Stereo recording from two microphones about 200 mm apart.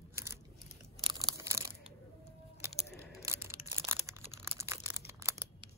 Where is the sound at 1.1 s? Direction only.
20° right (ahead or behind).